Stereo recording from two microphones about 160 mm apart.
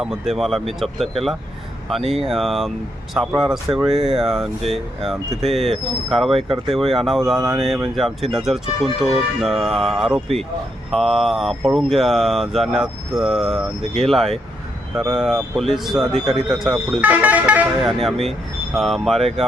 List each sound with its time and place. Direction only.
0.0 s speech: 5° right (ahead or behind)
6.3 s speech: 35° right (ahead or behind)
6.9 s speech: centre (ahead or behind)